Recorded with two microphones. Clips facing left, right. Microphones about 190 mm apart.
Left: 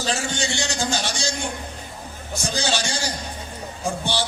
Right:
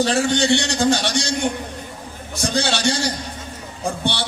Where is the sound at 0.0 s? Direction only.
60° right (ahead or behind).